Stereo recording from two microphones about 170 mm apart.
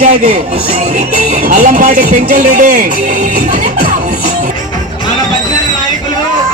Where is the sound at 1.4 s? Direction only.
45° right (ahead or behind).